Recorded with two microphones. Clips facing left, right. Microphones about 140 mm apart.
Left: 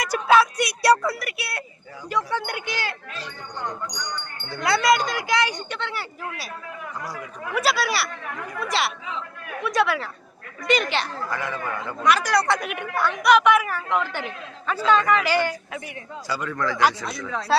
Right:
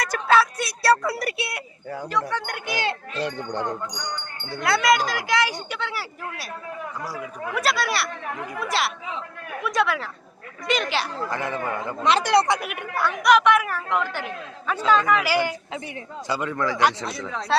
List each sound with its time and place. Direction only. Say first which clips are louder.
0.0 s music: left 2 dB; 10° left (ahead or behind)
1.1 s a woman's voice: right 5 dB; 35° right (ahead or behind)
2.0 s a woman's voice: left 2 dB; 5° left (ahead or behind)
3.2 s speech: right 9 dB; 60° right (ahead or behind)
3.9 s speech: even; 30° right (ahead or behind)
4.6 s a woman's voice: even; centre (ahead or behind)
11.3 s speech: right 2 dB; 25° right (ahead or behind)
12.5 s a woman's voice: left 1 dB; 5° right (ahead or behind)
16.2 s speech: right 2 dB; 20° right (ahead or behind)